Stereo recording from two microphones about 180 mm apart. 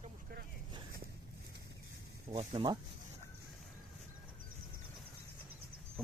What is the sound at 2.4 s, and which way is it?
Speech, 25° right (ahead or behind).